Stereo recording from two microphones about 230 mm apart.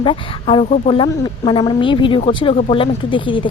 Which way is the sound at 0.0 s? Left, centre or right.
Left.